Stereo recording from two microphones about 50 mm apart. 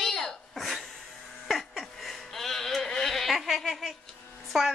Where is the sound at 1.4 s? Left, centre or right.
Centre.